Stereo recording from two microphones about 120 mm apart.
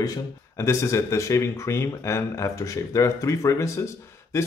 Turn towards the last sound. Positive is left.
turn(degrees=25)  # may be behind; listen again after turning